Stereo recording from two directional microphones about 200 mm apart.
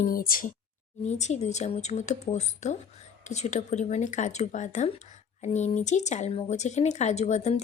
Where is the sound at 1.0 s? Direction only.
35° left (ahead or behind).